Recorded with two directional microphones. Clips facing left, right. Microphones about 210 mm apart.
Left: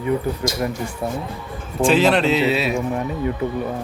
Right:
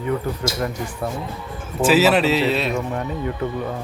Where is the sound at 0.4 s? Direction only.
15° left (ahead or behind).